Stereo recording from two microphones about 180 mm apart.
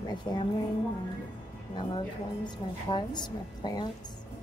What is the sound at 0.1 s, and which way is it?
Speech, 25° left (ahead or behind).